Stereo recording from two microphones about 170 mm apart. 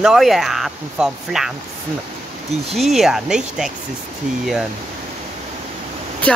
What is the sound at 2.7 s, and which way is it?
Speech, centre (ahead or behind).